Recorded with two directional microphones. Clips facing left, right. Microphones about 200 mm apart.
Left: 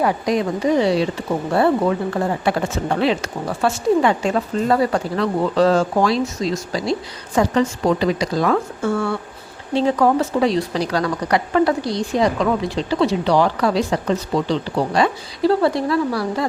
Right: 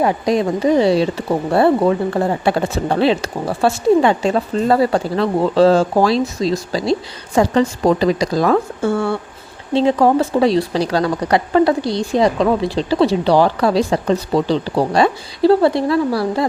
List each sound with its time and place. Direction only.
0.0 s a woman's voice: 30° right (ahead or behind)
2.4 s speech: 30° right (ahead or behind)